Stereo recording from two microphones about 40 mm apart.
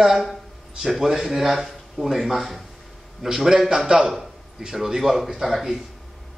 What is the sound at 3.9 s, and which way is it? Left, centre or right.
A man's voice, right.